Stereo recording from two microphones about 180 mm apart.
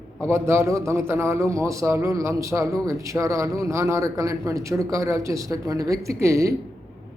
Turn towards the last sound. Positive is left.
turn(degrees=-15)  # may be behind; listen again after turning